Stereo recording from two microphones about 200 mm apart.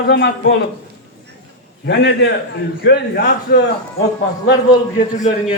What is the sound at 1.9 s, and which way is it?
A man's voice, 55° left (ahead or behind).